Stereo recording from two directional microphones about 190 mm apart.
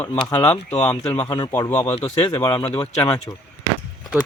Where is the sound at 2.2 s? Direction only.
25° left (ahead or behind).